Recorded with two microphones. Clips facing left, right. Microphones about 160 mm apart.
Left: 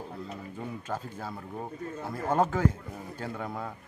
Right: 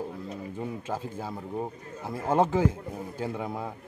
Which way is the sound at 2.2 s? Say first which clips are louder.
Right 3 dB; 25° right (ahead or behind).